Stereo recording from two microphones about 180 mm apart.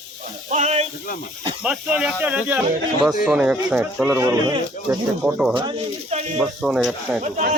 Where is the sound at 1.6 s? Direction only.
5° right (ahead or behind).